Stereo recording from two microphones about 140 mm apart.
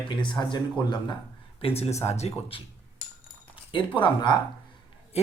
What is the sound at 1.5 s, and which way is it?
Speech, 45° left (ahead or behind).